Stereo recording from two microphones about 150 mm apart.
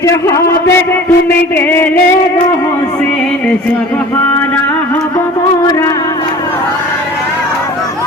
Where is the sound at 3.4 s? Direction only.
10° left (ahead or behind).